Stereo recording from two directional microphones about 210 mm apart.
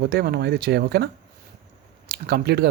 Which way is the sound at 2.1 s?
50° right (ahead or behind).